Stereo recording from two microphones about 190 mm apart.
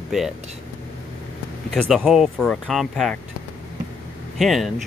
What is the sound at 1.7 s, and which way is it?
Speech, centre (ahead or behind).